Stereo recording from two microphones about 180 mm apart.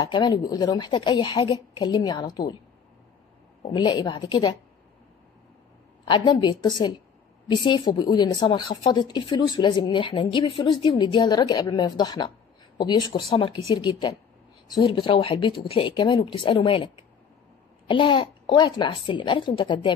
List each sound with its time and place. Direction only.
0.1 s a woman's voice: 25° left (ahead or behind)
3.7 s a woman's voice: 20° left (ahead or behind)
6.0 s a woman's voice: 25° left (ahead or behind)
14.7 s a woman's voice: 30° left (ahead or behind)